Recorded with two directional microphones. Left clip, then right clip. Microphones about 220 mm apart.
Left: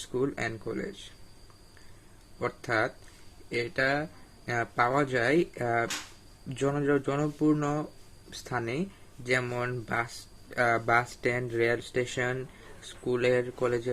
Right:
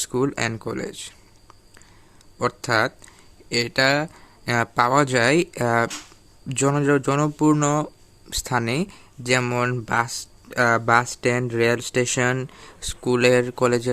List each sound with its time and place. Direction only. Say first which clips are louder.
0.1 s speech: right 6 dB; 45° right (ahead or behind)
2.4 s speech: right 8 dB; 45° right (ahead or behind)